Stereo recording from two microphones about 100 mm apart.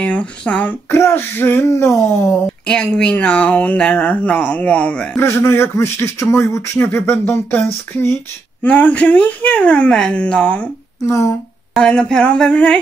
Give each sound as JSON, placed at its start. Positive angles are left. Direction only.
{"t": 0.0, "sound": "speech", "side_deg": 15}
{"t": 2.6, "sound": "speech", "side_deg": 10}
{"t": 5.2, "sound": "speech", "side_deg": 25}
{"t": 11.1, "sound": "speech", "side_deg": 30}
{"t": 11.8, "sound": "speech", "side_deg": 10}